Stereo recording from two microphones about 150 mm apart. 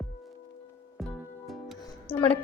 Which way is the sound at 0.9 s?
Centre (ahead or behind).